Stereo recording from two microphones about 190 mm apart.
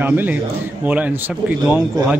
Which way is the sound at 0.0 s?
10° right (ahead or behind).